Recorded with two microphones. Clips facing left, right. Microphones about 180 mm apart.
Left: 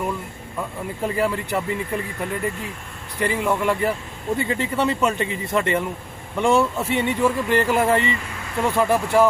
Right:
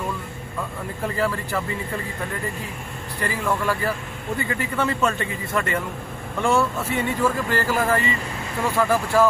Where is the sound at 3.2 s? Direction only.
20° left (ahead or behind).